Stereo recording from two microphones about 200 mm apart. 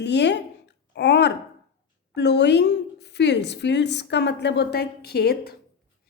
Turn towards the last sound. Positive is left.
turn(degrees=55)  # may be behind; listen again after turning